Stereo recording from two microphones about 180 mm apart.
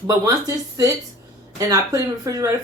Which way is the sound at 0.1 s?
20° right (ahead or behind).